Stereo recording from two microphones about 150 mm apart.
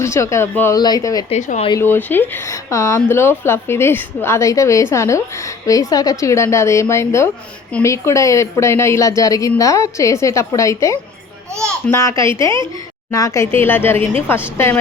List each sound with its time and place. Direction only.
0.0 s speech: 20° left (ahead or behind)
1.3 s speech: 50° left (ahead or behind)
1.8 s speech: 15° left (ahead or behind)